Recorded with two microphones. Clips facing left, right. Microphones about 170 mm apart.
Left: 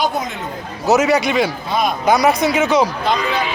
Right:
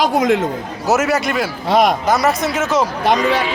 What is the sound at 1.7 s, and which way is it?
Speech, 85° right.